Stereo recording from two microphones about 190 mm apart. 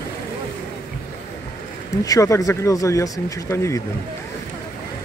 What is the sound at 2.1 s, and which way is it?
Speech, 15° left (ahead or behind).